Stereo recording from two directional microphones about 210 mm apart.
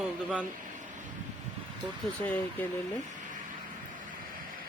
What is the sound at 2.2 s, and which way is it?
Speech, 10° left (ahead or behind).